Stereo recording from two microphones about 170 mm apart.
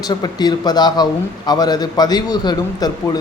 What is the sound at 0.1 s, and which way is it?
A man's voice, 25° left (ahead or behind).